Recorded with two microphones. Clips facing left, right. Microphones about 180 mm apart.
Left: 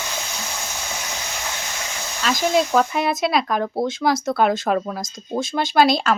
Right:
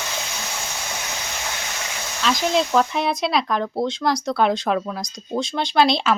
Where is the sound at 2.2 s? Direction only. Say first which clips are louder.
Left 1 dB; 5° left (ahead or behind).